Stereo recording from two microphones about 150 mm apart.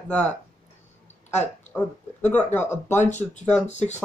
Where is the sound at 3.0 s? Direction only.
50° left (ahead or behind).